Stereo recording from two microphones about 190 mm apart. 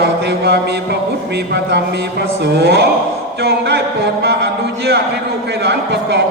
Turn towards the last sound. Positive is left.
turn(degrees=-60)  # may be behind; listen again after turning